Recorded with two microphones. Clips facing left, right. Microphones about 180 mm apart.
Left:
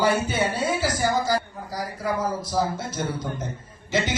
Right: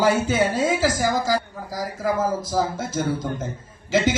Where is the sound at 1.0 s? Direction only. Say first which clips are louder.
Right 1 dB; 90° right.